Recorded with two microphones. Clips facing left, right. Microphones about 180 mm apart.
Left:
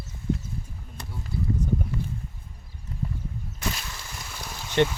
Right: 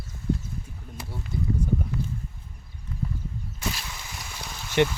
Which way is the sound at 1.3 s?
20° right (ahead or behind).